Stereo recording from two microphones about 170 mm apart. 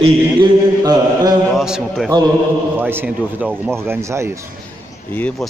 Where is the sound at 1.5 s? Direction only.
Centre (ahead or behind).